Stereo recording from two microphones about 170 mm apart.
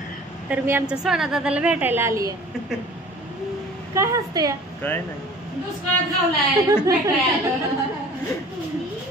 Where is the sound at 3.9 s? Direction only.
20° right (ahead or behind).